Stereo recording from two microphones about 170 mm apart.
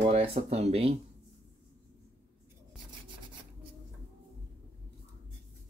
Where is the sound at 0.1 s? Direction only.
35° right (ahead or behind).